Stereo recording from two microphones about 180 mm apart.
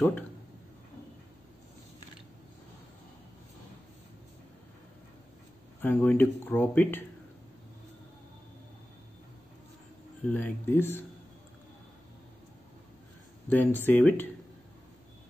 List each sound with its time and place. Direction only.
5.8 s speech: 10° left (ahead or behind)
10.2 s speech: 10° left (ahead or behind)
13.5 s speech: 10° left (ahead or behind)